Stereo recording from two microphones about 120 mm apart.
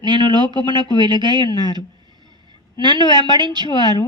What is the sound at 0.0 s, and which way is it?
Speech, 40° right (ahead or behind).